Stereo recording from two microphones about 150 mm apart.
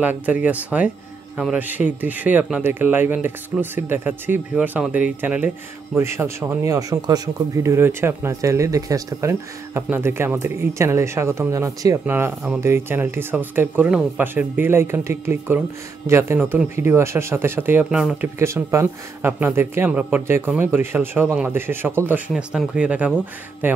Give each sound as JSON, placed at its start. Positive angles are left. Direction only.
{"t": 0.0, "sound": "speech", "side_deg": -10}
{"t": 22.3, "sound": "speech", "side_deg": -5}